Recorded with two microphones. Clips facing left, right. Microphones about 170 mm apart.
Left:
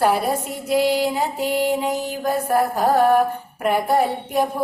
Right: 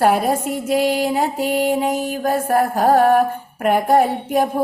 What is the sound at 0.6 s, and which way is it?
Music, 45° right (ahead or behind).